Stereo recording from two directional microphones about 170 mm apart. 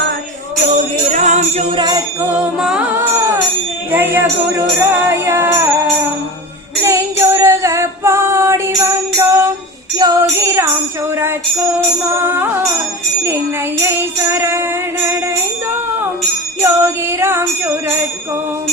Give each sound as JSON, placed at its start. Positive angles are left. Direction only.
{"t": 1.1, "sound": "music", "side_deg": -45}
{"t": 1.7, "sound": "jingle bell", "side_deg": -25}
{"t": 2.2, "sound": "music", "side_deg": -10}
{"t": 6.8, "sound": "music", "side_deg": -15}
{"t": 16.6, "sound": "jingle bell", "side_deg": -15}